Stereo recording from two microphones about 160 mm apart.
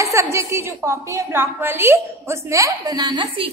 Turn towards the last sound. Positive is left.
turn(degrees=-30)  # may be behind; listen again after turning